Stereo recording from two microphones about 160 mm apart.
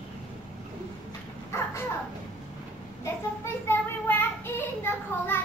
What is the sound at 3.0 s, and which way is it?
Child singing, 15° left (ahead or behind).